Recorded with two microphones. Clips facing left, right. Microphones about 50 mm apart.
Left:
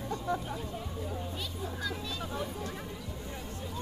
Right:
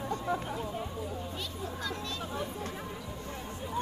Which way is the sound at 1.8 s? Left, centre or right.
Centre.